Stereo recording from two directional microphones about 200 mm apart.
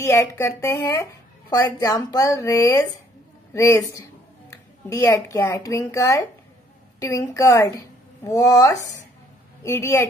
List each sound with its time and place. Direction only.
0.0 s a woman's voice: 15° left (ahead or behind)